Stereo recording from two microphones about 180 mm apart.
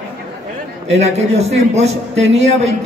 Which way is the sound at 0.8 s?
35° right (ahead or behind).